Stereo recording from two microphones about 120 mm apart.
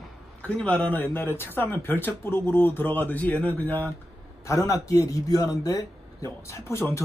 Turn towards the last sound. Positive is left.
turn(degrees=25)  # may be behind; listen again after turning